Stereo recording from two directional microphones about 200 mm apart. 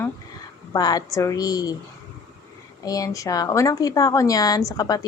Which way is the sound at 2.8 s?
15° left (ahead or behind).